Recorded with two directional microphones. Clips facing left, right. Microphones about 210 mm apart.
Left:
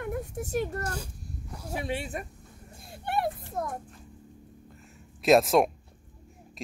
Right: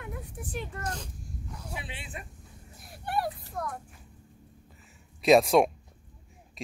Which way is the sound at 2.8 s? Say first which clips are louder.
Left 1 dB; 25° left (ahead or behind).